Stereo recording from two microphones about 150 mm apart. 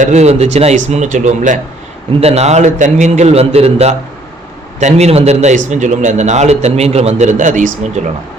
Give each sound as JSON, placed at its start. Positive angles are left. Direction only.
{"t": 0.0, "sound": "a man's voice", "side_deg": -50}
{"t": 2.2, "sound": "a man's voice", "side_deg": -45}